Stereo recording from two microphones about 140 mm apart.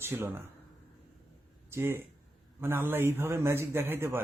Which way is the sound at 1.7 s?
15° right (ahead or behind).